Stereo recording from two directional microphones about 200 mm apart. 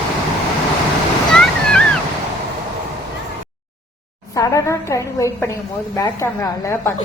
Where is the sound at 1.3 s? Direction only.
5° left (ahead or behind).